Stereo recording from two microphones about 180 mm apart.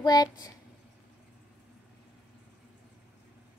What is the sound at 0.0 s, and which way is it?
Speech, 20° left (ahead or behind).